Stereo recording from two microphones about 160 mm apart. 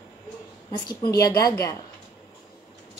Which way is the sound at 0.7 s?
25° left (ahead or behind).